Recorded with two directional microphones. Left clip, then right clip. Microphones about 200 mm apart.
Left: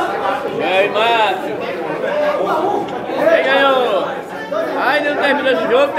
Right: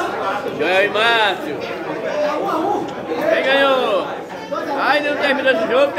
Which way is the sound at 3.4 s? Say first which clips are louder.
Left 2 dB; 15° right (ahead or behind).